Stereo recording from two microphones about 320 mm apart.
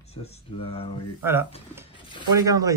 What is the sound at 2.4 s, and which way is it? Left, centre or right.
Speech, centre.